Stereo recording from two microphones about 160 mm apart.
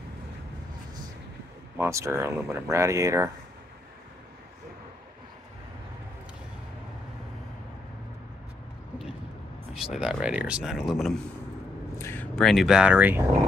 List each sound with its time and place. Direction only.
1.8 s speech: 15° right (ahead or behind)
9.8 s speech: 5° right (ahead or behind)
12.0 s speech: 10° left (ahead or behind); by 13.2 s 10° right (ahead or behind)